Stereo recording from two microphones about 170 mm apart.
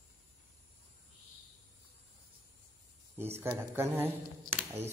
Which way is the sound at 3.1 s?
15° right (ahead or behind).